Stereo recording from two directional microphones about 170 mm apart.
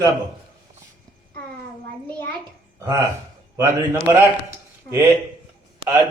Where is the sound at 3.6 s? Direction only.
20° right (ahead or behind).